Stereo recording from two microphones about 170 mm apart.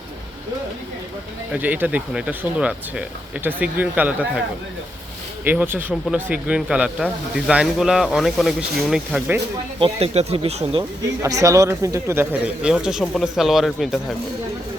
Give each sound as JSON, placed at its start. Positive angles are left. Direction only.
{"t": 1.5, "sound": "speech", "side_deg": -10}
{"t": 5.5, "sound": "speech", "side_deg": -10}
{"t": 9.8, "sound": "speech", "side_deg": -35}
{"t": 11.2, "sound": "speech", "side_deg": -20}